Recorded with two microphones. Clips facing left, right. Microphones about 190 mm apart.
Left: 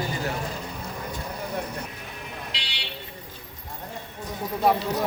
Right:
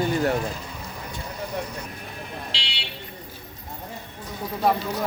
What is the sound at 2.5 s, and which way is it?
Buzzer, 30° right (ahead or behind).